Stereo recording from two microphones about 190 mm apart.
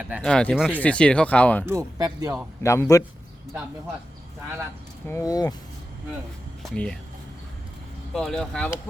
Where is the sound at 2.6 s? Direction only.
15° left (ahead or behind).